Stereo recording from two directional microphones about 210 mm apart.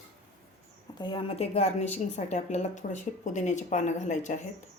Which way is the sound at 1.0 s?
20° left (ahead or behind).